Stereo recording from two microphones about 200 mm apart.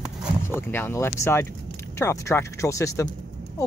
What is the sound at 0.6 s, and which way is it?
Speech, 10° left (ahead or behind).